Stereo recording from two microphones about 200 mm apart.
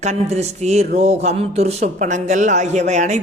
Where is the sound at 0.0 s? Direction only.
35° right (ahead or behind).